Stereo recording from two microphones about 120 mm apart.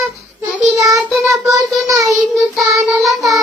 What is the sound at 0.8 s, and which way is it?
Child singing, 30° right (ahead or behind).